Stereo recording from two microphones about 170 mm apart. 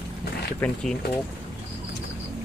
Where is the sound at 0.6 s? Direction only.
10° left (ahead or behind).